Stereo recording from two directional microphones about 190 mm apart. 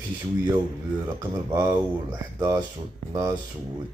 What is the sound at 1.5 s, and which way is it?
Speech, 15° right (ahead or behind).